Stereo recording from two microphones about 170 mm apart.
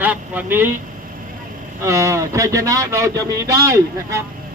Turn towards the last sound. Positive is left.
turn(degrees=-15)  # may be behind; listen again after turning